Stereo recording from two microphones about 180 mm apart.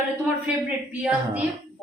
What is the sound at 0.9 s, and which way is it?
Speech, 10° right (ahead or behind).